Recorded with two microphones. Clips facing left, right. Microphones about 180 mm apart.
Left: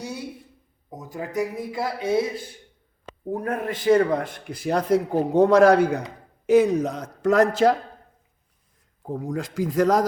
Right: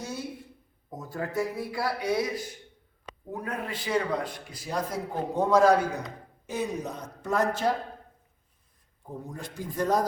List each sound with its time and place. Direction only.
0.9 s speech: 15° left (ahead or behind)
3.3 s a man's voice: 50° left (ahead or behind); by 6.0 s 65° left (ahead or behind)
6.4 s a man's voice: 80° left
9.0 s a man's voice: 90° left